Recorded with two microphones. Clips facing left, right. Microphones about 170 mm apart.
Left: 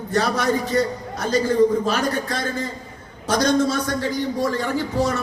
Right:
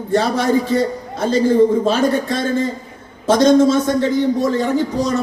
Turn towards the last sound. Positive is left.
turn(degrees=-20)  # may be behind; listen again after turning